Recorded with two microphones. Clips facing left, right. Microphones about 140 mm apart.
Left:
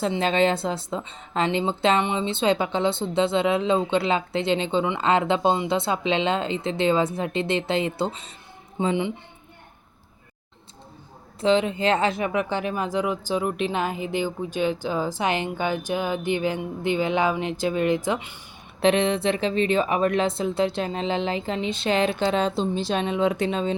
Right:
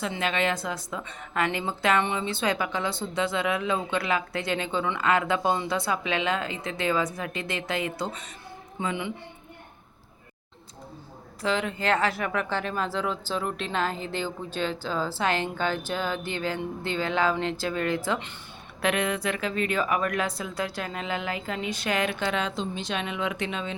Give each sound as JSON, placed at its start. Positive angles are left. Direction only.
{"t": 0.0, "sound": "a woman's voice", "side_deg": 30}
{"t": 11.3, "sound": "speech", "side_deg": 20}
{"t": 18.8, "sound": "a woman's voice", "side_deg": 25}